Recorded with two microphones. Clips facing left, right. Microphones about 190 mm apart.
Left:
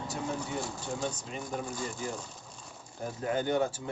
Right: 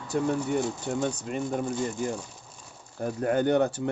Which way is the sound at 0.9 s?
55° right (ahead or behind).